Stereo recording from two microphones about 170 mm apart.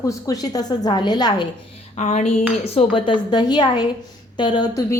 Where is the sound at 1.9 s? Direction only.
40° left (ahead or behind).